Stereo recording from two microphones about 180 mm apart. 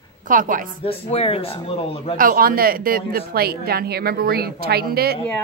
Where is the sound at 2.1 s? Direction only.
55° right (ahead or behind).